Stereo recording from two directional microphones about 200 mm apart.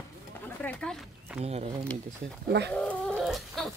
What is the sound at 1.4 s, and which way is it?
Speech, 30° right (ahead or behind).